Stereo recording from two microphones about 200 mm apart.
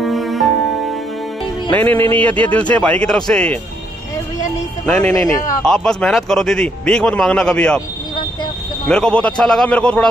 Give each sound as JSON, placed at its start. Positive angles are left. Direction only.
{"t": 0.0, "sound": "music", "side_deg": 0}
{"t": 1.7, "sound": "a man's voice", "side_deg": 10}
{"t": 4.8, "sound": "a man's voice", "side_deg": 5}
{"t": 5.1, "sound": "speech", "side_deg": 15}
{"t": 5.7, "sound": "a man's voice", "side_deg": 5}
{"t": 8.8, "sound": "a man's voice", "side_deg": 5}